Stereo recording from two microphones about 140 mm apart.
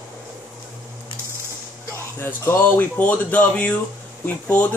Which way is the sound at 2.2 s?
15° left (ahead or behind).